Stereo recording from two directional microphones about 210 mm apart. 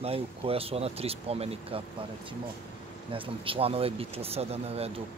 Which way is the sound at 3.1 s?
25° right (ahead or behind).